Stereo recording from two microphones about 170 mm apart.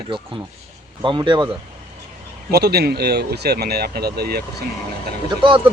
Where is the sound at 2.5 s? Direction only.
70° right (ahead or behind).